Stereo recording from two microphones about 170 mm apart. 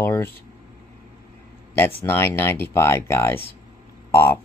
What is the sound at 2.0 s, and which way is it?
Speech, 15° left (ahead or behind).